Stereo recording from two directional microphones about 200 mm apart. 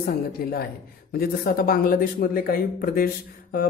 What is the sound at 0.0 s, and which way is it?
Speech, 50° left (ahead or behind).